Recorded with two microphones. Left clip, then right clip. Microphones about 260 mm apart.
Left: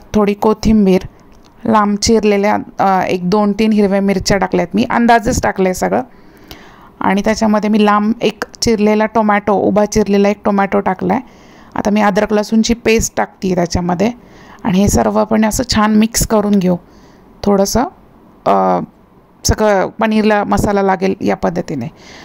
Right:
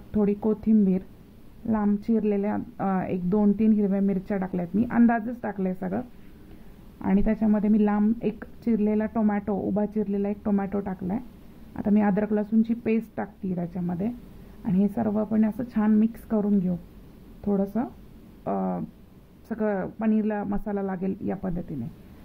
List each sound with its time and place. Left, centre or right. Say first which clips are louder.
0.1 s speech: left 13 dB; left